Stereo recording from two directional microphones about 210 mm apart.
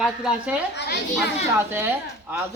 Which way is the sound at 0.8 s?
55° left (ahead or behind).